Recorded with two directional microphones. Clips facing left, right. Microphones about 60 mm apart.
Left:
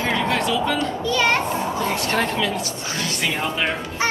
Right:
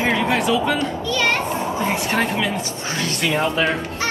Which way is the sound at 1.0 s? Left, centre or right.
Left.